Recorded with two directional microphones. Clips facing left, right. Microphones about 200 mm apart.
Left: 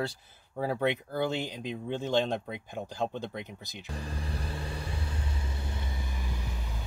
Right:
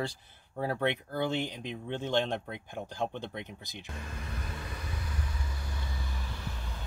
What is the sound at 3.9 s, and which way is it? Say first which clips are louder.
Vehicle: left 5 dB; 35° left (ahead or behind).